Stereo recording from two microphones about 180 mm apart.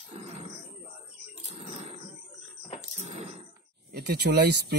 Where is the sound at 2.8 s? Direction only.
40° right (ahead or behind).